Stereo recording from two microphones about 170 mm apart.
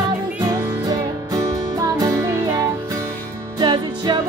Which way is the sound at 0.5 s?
20° right (ahead or behind).